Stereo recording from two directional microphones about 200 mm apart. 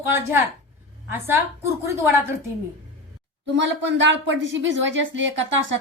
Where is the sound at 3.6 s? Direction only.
65° right (ahead or behind).